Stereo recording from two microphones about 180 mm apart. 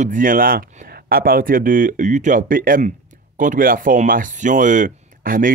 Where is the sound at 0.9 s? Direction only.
55° right (ahead or behind).